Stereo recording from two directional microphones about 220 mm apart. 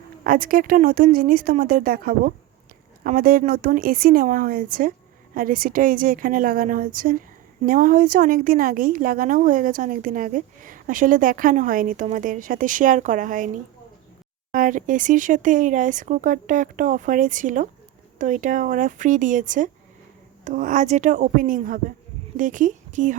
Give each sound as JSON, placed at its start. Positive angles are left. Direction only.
{"t": 0.3, "sound": "a woman's voice", "side_deg": -40}
{"t": 14.5, "sound": "a woman's voice", "side_deg": -35}